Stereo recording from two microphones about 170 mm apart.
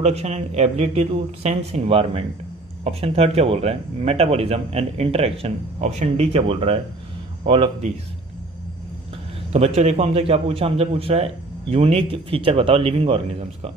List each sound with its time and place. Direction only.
0.0 s a man's voice: 40° right (ahead or behind)
9.5 s a man's voice: 40° right (ahead or behind)